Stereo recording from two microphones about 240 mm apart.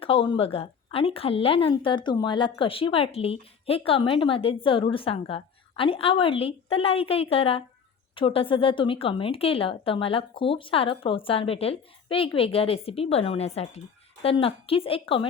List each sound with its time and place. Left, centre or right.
0.0 s a woman's voice: left